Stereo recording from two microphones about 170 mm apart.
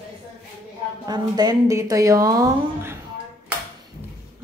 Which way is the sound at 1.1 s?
25° right (ahead or behind).